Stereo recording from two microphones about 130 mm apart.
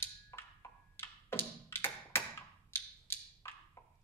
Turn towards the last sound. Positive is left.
turn(degrees=20)  # may be behind; listen again after turning